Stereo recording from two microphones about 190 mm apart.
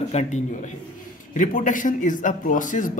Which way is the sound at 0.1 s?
35° left (ahead or behind).